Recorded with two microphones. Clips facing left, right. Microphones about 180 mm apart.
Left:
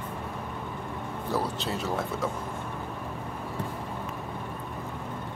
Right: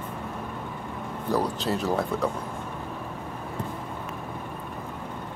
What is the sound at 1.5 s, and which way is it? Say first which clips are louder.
Speech: right 4 dB; centre (ahead or behind).